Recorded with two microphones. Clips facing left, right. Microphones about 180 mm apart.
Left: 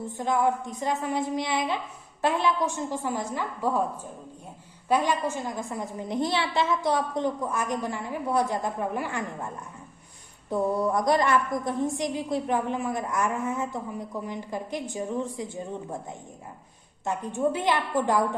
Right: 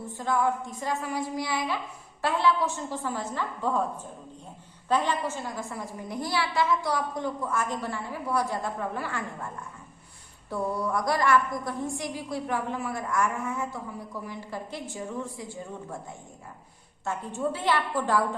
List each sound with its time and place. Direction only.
0.1 s a woman's voice: 20° left (ahead or behind)
10.5 s a woman's voice: 20° left (ahead or behind)